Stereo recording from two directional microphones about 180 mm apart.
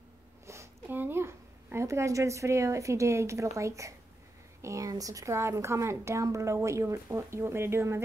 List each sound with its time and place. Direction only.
0.5 s a woman's voice: 15° right (ahead or behind)